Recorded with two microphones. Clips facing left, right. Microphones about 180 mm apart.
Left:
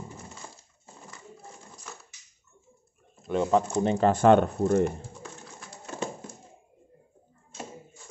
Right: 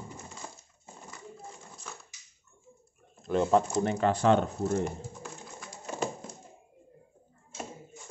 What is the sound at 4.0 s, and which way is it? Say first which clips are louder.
Speech: left 6 dB; 45° left (ahead or behind).